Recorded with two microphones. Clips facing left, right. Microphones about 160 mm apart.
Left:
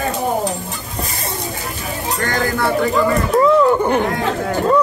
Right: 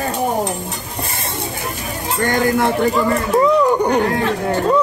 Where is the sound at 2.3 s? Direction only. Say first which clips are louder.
Right 3 dB; 20° right (ahead or behind).